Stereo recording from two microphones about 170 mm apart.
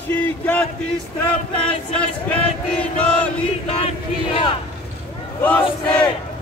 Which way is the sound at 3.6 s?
35° left (ahead or behind).